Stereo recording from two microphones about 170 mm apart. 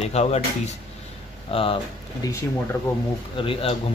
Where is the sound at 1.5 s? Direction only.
35° left (ahead or behind).